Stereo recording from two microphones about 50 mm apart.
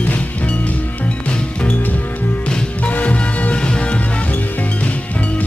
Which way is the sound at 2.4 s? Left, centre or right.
Left.